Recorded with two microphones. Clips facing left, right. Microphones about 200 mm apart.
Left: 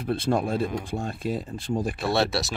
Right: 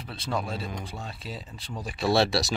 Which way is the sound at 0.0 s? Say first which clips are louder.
Left 8 dB; 50° left (ahead or behind).